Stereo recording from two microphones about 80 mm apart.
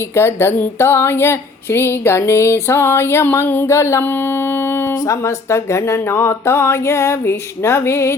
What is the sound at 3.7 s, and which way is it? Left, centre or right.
Speech, left.